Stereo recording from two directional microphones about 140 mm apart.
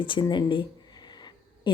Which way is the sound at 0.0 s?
35° left (ahead or behind).